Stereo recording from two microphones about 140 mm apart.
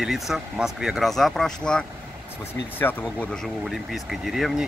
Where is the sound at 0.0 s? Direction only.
5° right (ahead or behind); by 3.3 s 10° left (ahead or behind).